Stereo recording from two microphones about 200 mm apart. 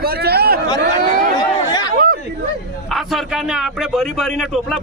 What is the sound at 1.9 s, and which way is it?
Speech, 45° right (ahead or behind).